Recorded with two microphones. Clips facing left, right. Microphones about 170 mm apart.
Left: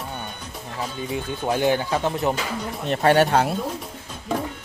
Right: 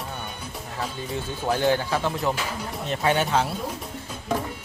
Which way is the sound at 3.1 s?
55° left (ahead or behind).